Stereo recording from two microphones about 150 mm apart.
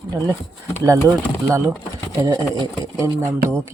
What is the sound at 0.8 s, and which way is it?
Speech, 20° right (ahead or behind).